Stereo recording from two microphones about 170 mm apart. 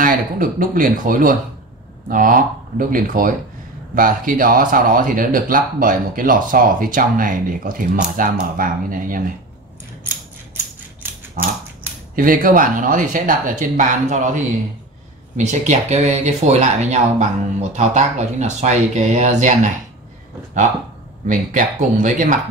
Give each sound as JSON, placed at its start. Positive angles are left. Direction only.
{"t": 0.0, "sound": "speech", "side_deg": -55}
{"t": 10.0, "sound": "mechanisms", "side_deg": -10}
{"t": 12.2, "sound": "speech", "side_deg": -55}
{"t": 21.3, "sound": "speech", "side_deg": -50}